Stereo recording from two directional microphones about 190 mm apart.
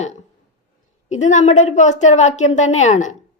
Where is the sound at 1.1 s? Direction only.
40° left (ahead or behind).